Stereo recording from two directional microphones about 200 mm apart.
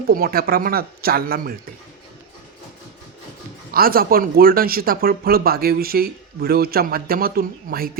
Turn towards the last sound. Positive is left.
turn(degrees=-50)  # may be behind; listen again after turning